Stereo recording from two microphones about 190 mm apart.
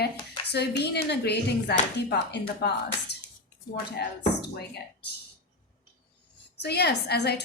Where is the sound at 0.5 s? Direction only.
60° left (ahead or behind).